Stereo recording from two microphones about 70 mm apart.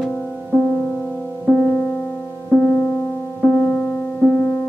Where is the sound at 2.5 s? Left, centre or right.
Left.